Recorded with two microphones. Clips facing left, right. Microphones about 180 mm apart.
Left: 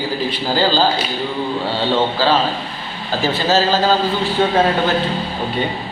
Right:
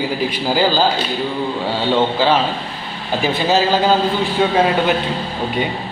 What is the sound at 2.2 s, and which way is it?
A man's voice, 20° right (ahead or behind).